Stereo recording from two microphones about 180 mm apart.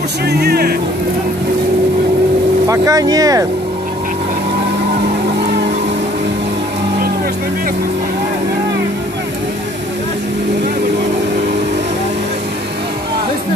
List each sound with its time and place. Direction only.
0.2 s speech: 60° right (ahead or behind)
2.7 s speech: 20° right (ahead or behind)